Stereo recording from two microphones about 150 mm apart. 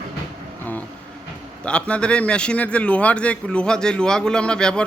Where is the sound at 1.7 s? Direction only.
5° left (ahead or behind).